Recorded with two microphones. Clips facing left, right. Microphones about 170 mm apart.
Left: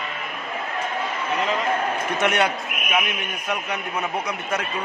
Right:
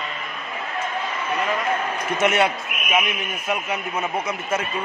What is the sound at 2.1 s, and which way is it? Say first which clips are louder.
A man's voice: right 3 dB; centre (ahead or behind).